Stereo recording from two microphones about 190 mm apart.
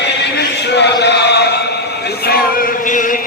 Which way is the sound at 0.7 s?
65° left (ahead or behind).